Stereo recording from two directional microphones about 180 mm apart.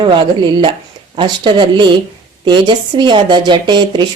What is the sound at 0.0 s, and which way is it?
A woman's voice, 25° right (ahead or behind).